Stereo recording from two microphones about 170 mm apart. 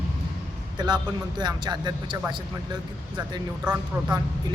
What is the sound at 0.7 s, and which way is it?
Speech, 25° right (ahead or behind).